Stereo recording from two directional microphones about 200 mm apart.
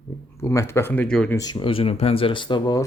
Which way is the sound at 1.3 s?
20° left (ahead or behind).